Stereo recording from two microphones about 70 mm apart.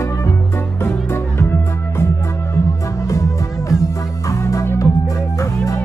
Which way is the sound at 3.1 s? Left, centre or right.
Left.